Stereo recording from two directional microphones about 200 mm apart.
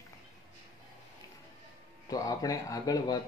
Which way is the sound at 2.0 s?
15° left (ahead or behind).